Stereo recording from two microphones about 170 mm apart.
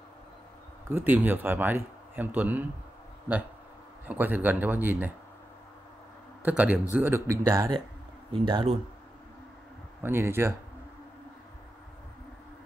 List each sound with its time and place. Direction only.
0.8 s speech: 10° right (ahead or behind)
4.1 s speech: 10° right (ahead or behind)
6.4 s speech: 10° right (ahead or behind); by 8.7 s 30° right (ahead or behind)
10.0 s speech: 15° right (ahead or behind)